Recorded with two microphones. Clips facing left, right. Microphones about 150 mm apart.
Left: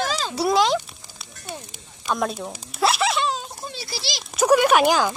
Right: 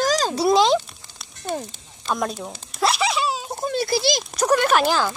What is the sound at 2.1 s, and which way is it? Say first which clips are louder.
Speech: even; centre (ahead or behind).